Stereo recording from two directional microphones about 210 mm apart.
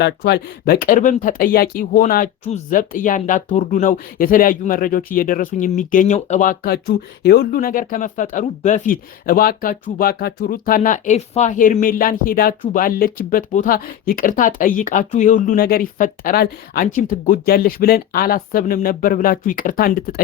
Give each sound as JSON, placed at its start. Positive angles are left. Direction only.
{"t": 0.0, "sound": "speech", "side_deg": 50}